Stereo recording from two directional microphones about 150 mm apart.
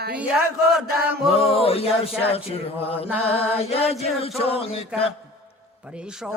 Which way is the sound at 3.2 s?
40° left (ahead or behind).